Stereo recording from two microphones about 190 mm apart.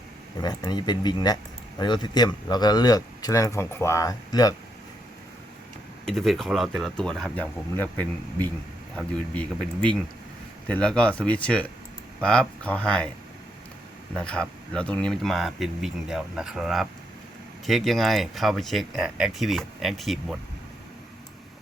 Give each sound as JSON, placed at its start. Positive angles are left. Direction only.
{"t": 0.3, "sound": "speech", "side_deg": 20}
{"t": 6.1, "sound": "speech", "side_deg": 0}
{"t": 14.1, "sound": "speech", "side_deg": 5}